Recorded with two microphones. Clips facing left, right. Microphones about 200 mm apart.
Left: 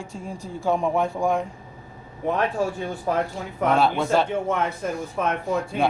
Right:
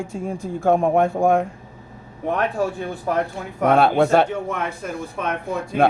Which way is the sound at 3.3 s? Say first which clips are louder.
Right 4 dB; 60° right (ahead or behind).